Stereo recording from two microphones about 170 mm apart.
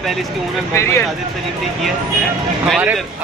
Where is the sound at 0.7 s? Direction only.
15° left (ahead or behind).